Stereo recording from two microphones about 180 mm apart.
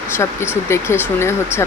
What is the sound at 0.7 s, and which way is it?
Speech, 15° left (ahead or behind).